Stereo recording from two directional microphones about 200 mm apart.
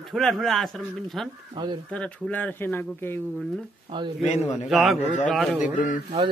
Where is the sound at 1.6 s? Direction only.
25° right (ahead or behind).